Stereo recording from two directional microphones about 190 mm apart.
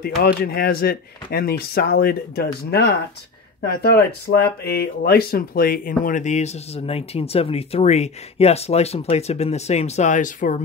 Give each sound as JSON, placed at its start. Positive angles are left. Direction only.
{"t": 0.0, "sound": "speech", "side_deg": 55}